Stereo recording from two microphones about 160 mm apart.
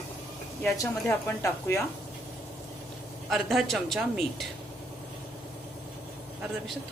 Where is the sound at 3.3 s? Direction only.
Centre (ahead or behind).